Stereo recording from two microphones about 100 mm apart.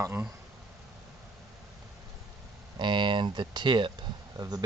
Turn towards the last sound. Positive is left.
turn(degrees=-40)  # may be behind; listen again after turning